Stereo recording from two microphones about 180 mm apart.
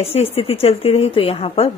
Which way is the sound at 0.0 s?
35° left (ahead or behind).